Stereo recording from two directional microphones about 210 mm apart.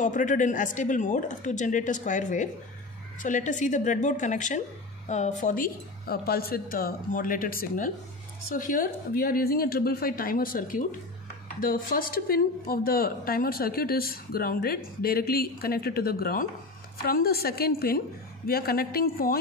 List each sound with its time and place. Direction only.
0.0 s a woman's voice: 40° left (ahead or behind)